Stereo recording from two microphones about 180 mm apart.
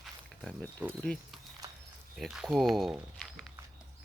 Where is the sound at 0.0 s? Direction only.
5° left (ahead or behind).